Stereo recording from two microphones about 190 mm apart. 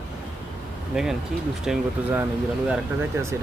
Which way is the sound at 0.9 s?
5° right (ahead or behind).